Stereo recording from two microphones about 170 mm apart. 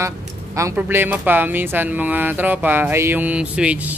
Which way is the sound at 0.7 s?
10° right (ahead or behind).